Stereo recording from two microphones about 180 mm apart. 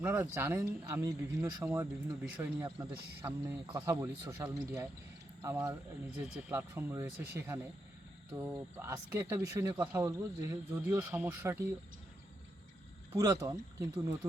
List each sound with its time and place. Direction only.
0.0 s speech: 15° right (ahead or behind)
3.7 s speech: 25° right (ahead or behind)
4.0 s speech: 15° right (ahead or behind)
8.7 s speech: 15° right (ahead or behind)
13.1 s speech: 20° right (ahead or behind)